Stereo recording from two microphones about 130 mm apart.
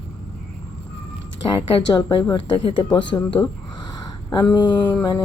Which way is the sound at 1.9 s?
35° left (ahead or behind).